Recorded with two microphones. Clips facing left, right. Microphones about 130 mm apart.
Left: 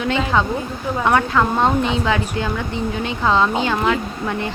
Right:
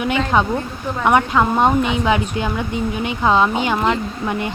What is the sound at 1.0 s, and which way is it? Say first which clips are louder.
Speech: right 2 dB; 15° right (ahead or behind).